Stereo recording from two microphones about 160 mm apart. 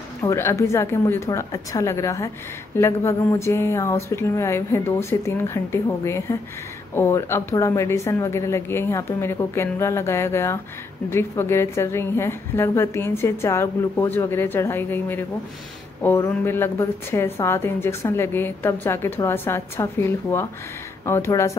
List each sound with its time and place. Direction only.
0.2 s a woman's voice: 15° left (ahead or behind)